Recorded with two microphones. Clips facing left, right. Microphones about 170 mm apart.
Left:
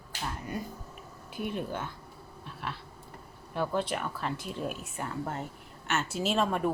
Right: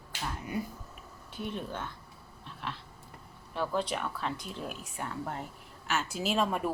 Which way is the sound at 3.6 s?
Centre (ahead or behind).